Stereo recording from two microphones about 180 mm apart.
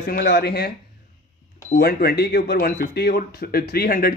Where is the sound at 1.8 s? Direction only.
60° left (ahead or behind).